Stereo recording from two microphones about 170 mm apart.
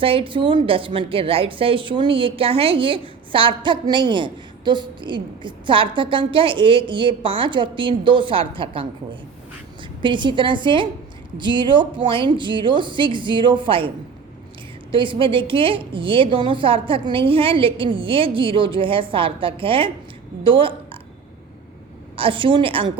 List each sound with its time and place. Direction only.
0.0 s a woman's voice: 35° right (ahead or behind)
10.0 s a woman's voice: 30° right (ahead or behind)
14.9 s a woman's voice: 30° right (ahead or behind)
20.4 s burping: 30° right (ahead or behind)
22.1 s a woman's voice: 30° right (ahead or behind)